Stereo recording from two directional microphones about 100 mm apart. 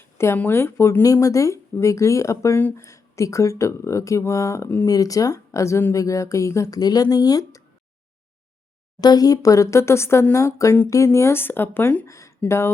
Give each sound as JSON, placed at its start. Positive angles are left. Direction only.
{"t": 0.3, "sound": "speech", "side_deg": 20}
{"t": 2.6, "sound": "a woman's voice", "side_deg": 20}
{"t": 2.8, "sound": "speech", "side_deg": 30}
{"t": 4.9, "sound": "speech", "side_deg": 35}
{"t": 9.0, "sound": "a woman's voice", "side_deg": 40}
{"t": 12.0, "sound": "a woman's voice", "side_deg": 30}